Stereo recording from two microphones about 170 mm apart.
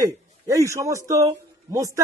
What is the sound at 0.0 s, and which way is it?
A man's voice, 20° right (ahead or behind).